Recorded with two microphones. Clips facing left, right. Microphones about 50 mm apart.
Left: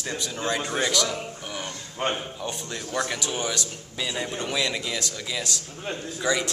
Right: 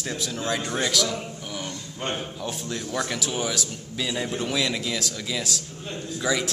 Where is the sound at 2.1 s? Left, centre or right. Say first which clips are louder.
Right 1 dB; centre.